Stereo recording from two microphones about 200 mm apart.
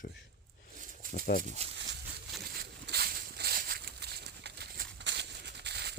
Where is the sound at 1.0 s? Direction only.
45° right (ahead or behind).